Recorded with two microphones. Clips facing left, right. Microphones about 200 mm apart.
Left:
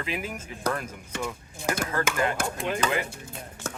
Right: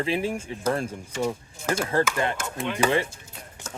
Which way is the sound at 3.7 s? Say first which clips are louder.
Left 2 dB; 65° left (ahead or behind).